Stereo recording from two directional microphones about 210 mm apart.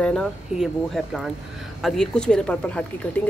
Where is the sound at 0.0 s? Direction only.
5° left (ahead or behind).